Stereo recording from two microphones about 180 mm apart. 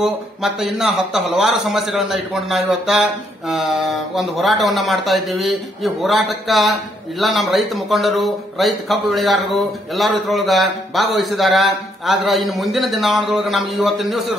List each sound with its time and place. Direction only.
0.0 s a man's voice: centre (ahead or behind)